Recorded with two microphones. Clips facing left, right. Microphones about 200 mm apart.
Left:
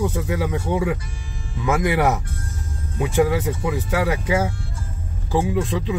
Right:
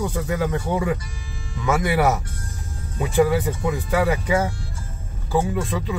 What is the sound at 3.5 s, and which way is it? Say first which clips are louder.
Speech: even; 5° left (ahead or behind).